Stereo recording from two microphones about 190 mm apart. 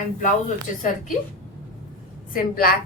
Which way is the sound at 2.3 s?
50° left (ahead or behind).